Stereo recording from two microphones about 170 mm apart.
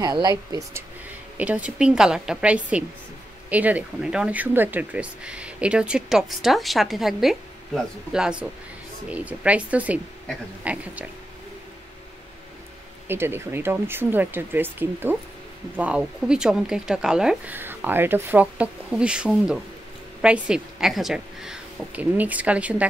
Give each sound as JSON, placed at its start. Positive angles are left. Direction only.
{"t": 0.0, "sound": "a woman's voice", "side_deg": -20}
{"t": 1.4, "sound": "a woman's voice", "side_deg": -5}
{"t": 13.1, "sound": "a woman's voice", "side_deg": -15}